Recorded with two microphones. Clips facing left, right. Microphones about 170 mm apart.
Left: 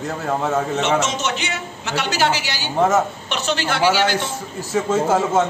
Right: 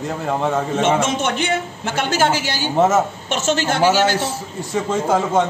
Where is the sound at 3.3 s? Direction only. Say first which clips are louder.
Right 4 dB; 45° right (ahead or behind).